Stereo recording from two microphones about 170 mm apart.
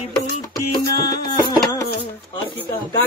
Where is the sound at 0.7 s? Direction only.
25° left (ahead or behind).